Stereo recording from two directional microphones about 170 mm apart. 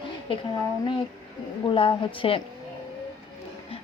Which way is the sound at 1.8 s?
30° left (ahead or behind).